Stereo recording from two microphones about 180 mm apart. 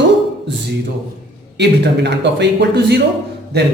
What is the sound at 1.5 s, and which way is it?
A man's voice, 70° right (ahead or behind).